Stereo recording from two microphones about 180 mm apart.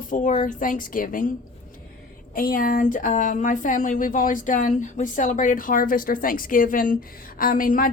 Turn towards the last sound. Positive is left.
turn(degrees=50)  # may be behind; listen again after turning